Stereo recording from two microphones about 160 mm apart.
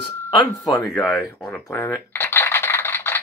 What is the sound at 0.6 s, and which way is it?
Speech, 20° left (ahead or behind).